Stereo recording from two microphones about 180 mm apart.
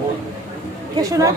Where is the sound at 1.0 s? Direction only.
20° right (ahead or behind).